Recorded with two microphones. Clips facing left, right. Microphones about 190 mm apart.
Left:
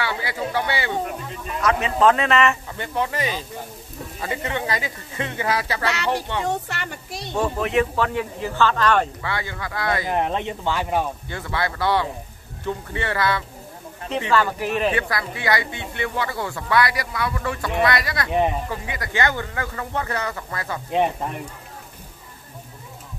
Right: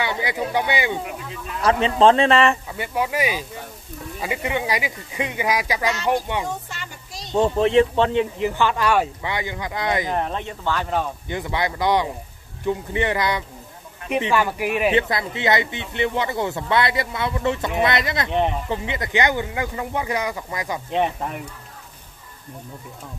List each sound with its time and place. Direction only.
0.0 s a sound: 20° right (ahead or behind)
1.6 s a man's voice: 30° right (ahead or behind)
2.7 s speech: 10° right (ahead or behind)
6.4 s speech: 65° left (ahead or behind)
7.3 s speech: 25° right (ahead or behind)
10.1 s speech: 15° left (ahead or behind)
11.2 s speech: 20° right (ahead or behind)
14.9 s speech: 20° right (ahead or behind)
20.9 s speech: centre (ahead or behind)